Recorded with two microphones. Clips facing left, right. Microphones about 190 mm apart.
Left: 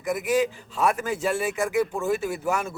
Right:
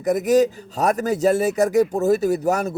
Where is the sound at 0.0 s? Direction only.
40° right (ahead or behind).